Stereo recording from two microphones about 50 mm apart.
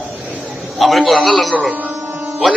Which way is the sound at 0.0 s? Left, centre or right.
Right.